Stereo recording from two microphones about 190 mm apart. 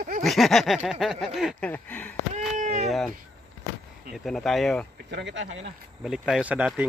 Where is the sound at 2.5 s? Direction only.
40° right (ahead or behind).